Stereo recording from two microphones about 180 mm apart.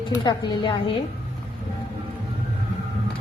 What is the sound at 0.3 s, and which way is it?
Speech, 25° left (ahead or behind).